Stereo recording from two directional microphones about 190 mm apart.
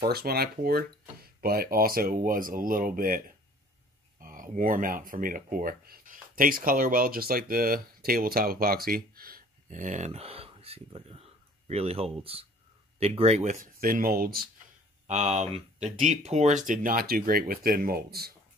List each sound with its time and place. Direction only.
0.0 s speech: 55° right (ahead or behind); by 13.6 s 35° right (ahead or behind)
13.7 s speech: 50° right (ahead or behind)
15.0 s speech: 35° right (ahead or behind); by 18.3 s 55° right (ahead or behind)